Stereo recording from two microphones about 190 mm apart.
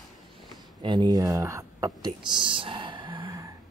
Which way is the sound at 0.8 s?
25° right (ahead or behind).